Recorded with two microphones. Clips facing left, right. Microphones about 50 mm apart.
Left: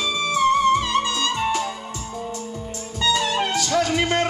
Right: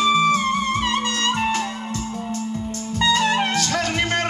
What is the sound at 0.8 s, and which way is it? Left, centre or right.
Music, right.